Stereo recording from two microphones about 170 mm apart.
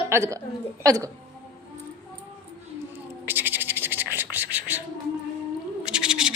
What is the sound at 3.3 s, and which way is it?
Scratch, 10° right (ahead or behind).